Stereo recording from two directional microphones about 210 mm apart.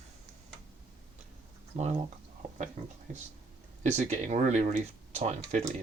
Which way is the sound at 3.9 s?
35° right (ahead or behind).